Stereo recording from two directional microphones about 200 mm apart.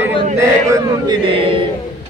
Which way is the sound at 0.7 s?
20° right (ahead or behind).